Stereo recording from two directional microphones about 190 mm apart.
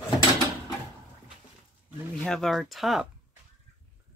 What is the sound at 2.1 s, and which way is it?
Speech, 5° left (ahead or behind).